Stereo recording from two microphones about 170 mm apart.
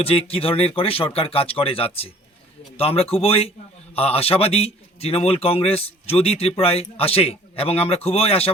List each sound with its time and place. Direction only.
0.0 s a man's voice: 35° left (ahead or behind)